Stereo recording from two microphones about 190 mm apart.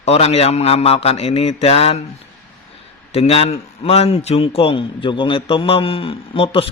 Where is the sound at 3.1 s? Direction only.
30° left (ahead or behind).